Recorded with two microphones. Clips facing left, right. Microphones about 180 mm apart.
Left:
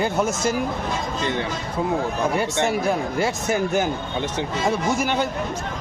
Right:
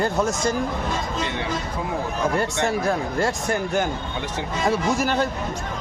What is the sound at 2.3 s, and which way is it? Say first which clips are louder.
Speech: left 1 dB; centre (ahead or behind).